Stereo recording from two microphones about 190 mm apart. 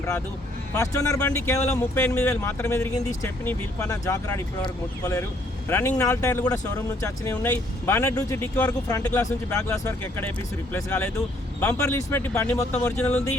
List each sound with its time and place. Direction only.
0.7 s speech: 15° left (ahead or behind)